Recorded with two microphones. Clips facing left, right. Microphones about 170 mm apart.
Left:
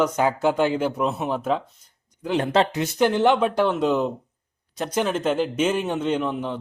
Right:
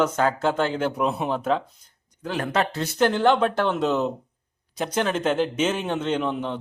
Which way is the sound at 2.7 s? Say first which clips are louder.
Left 1 dB; 15° left (ahead or behind).